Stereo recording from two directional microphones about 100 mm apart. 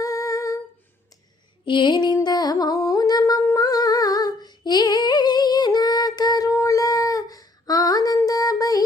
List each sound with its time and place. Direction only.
0.0 s female singing: 35° left (ahead or behind)
1.6 s music: 55° left (ahead or behind)
3.4 s female singing: 40° left (ahead or behind)